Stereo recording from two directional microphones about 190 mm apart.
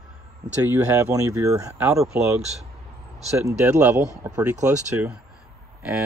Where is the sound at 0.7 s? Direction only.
10° right (ahead or behind).